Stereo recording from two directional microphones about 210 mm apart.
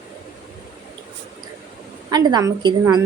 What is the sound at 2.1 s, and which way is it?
Speech, 20° right (ahead or behind).